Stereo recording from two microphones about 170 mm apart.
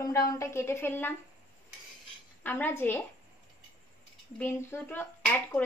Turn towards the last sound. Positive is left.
turn(degrees=10)  # may be behind; listen again after turning